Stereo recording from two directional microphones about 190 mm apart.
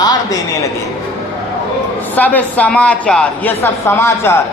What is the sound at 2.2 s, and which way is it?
Speech, 10° left (ahead or behind).